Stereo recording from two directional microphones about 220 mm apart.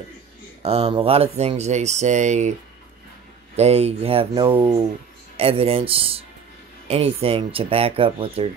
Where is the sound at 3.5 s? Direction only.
30° right (ahead or behind).